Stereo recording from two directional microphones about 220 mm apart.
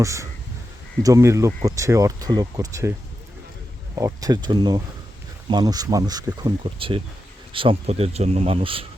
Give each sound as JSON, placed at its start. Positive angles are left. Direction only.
{"t": 0.0, "sound": "speech", "side_deg": -15}
{"t": 3.9, "sound": "speech", "side_deg": -15}